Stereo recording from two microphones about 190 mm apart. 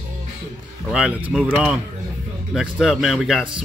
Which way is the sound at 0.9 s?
5° right (ahead or behind).